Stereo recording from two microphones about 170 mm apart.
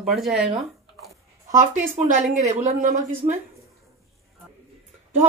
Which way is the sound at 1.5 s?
45° right (ahead or behind).